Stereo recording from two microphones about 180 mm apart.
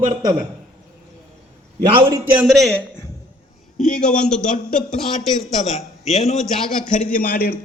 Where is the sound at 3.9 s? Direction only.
5° left (ahead or behind).